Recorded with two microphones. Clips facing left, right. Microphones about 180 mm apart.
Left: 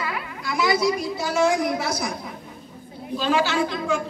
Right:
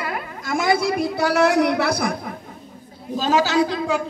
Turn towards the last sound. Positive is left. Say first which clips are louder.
# right 3 dB
turn(degrees=-35)  # may be behind; listen again after turning